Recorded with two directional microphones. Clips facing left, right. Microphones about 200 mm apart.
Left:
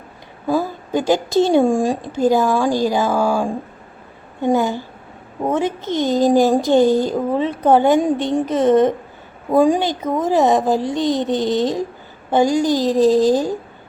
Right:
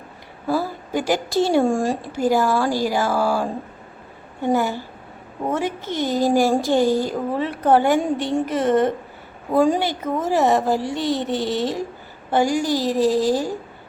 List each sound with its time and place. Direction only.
0.4 s a woman's voice: 15° left (ahead or behind)